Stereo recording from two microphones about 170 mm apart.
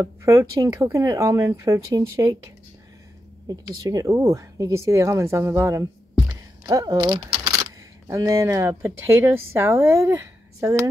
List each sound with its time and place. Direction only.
0.0 s speech: 15° right (ahead or behind)
3.4 s speech: 20° right (ahead or behind)